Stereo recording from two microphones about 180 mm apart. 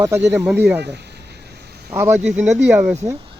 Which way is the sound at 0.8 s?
70° right (ahead or behind).